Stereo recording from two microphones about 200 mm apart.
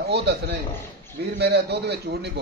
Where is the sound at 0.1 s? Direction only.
55° right (ahead or behind).